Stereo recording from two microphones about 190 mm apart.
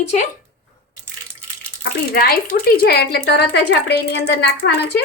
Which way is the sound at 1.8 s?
55° left (ahead or behind).